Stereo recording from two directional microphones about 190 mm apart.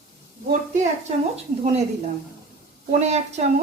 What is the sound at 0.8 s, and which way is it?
A woman's voice, 35° right (ahead or behind).